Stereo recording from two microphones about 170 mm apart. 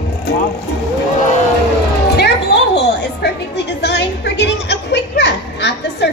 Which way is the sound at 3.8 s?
80° left.